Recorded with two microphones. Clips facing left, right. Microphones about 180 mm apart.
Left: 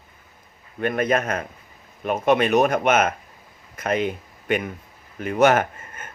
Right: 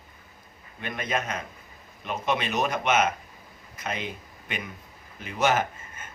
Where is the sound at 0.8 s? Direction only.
50° left (ahead or behind).